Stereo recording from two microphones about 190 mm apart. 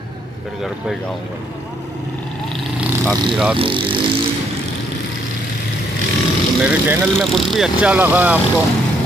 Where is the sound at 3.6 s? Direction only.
30° right (ahead or behind).